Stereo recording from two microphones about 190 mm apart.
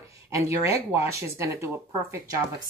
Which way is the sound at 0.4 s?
15° right (ahead or behind).